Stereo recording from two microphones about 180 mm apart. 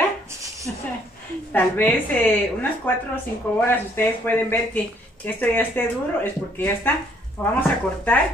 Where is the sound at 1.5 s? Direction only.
10° left (ahead or behind).